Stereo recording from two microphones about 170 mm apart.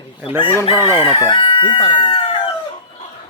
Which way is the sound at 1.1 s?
30° left (ahead or behind).